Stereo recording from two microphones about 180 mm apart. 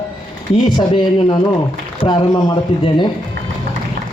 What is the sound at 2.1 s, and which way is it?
A man's voice, 25° left (ahead or behind).